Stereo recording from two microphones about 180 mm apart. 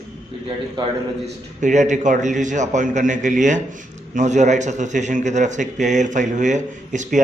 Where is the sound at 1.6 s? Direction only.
40° right (ahead or behind).